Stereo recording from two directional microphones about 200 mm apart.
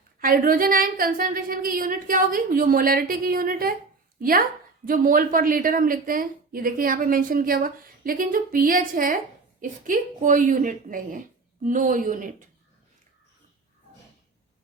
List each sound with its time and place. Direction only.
0.2 s a woman's voice: 45° right (ahead or behind)